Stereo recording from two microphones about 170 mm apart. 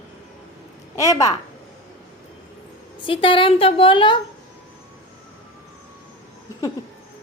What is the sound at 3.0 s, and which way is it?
A woman's voice, 30° left (ahead or behind).